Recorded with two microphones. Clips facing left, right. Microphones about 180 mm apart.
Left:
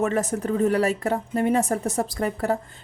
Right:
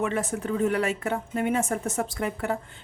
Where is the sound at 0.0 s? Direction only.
40° left (ahead or behind).